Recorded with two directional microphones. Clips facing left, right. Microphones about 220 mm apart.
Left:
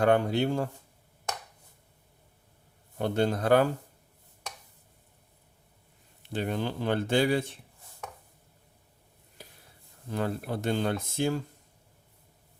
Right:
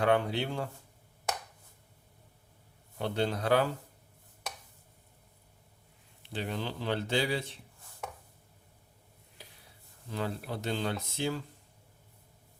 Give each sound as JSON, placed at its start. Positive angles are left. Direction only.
{"t": 0.0, "sound": "speech", "side_deg": 45}
{"t": 3.0, "sound": "speech", "side_deg": 45}
{"t": 6.3, "sound": "speech", "side_deg": 50}
{"t": 10.1, "sound": "speech", "side_deg": 50}